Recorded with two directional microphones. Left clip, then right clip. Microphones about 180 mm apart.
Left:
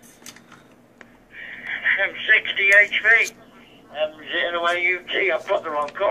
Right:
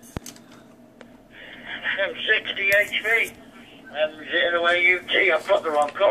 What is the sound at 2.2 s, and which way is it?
Speech, 50° right (ahead or behind).